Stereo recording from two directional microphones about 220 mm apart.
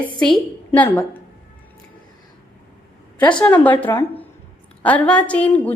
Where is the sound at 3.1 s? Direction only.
5° left (ahead or behind).